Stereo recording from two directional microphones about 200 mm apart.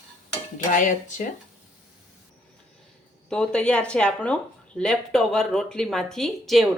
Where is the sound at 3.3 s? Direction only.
5° left (ahead or behind).